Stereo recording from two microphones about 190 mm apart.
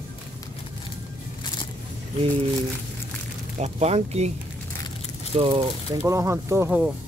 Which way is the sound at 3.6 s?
35° right (ahead or behind).